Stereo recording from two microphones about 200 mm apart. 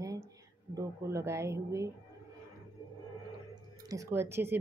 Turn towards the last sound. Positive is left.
turn(degrees=-10)  # may be behind; listen again after turning